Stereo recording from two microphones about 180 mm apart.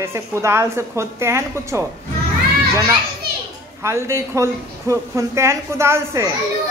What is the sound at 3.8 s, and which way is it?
A woman's voice, 15° right (ahead or behind).